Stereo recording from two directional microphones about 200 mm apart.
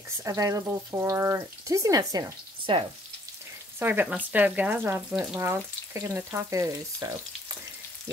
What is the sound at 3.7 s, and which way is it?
Speech, 10° right (ahead or behind).